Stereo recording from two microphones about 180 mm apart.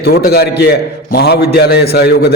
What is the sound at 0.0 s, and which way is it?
A man's voice, 60° left (ahead or behind).